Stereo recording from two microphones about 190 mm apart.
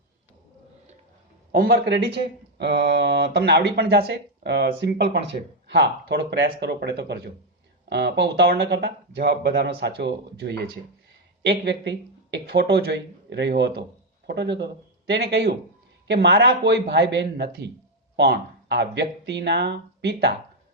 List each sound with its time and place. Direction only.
1.5 s speech: 55° right (ahead or behind)